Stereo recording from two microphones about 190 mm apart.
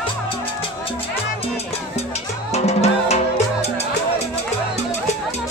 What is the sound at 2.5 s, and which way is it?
Music, 35° left (ahead or behind).